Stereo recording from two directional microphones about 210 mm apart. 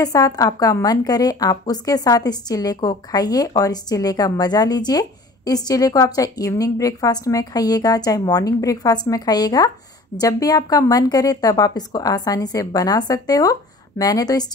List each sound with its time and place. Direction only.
0.0 s a woman's voice: 15° left (ahead or behind)